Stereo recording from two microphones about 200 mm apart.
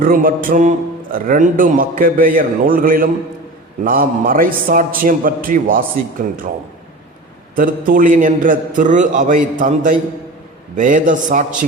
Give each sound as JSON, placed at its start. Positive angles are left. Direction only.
{"t": 0.0, "sound": "a man's voice", "side_deg": -45}
{"t": 7.5, "sound": "a man's voice", "side_deg": -45}